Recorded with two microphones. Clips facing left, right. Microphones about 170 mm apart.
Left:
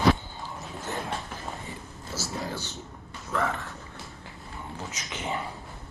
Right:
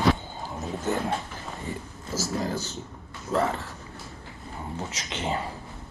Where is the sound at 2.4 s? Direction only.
40° right (ahead or behind).